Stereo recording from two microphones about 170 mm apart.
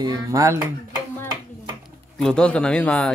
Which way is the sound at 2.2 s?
5° left (ahead or behind).